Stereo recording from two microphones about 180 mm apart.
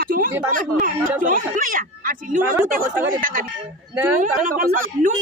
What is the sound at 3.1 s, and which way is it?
Speech, 50° right (ahead or behind).